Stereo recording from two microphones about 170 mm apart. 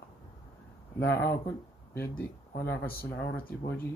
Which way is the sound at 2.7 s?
65° left (ahead or behind).